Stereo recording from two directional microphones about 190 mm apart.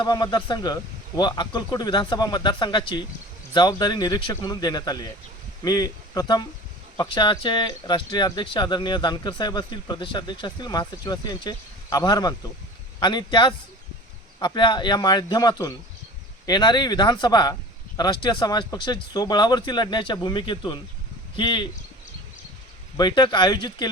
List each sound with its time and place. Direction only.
0.0 s speech: 20° left (ahead or behind)
23.0 s speech: 25° left (ahead or behind)